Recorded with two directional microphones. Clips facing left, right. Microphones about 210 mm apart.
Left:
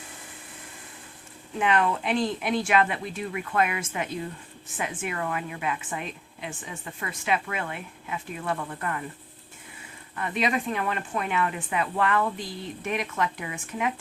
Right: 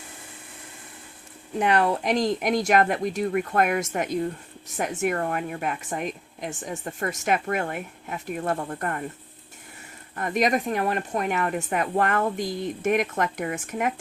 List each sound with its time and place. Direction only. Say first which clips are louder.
1.5 s a woman's voice: right 3 dB; 40° right (ahead or behind)
10.2 s a woman's voice: right 4 dB; 45° right (ahead or behind)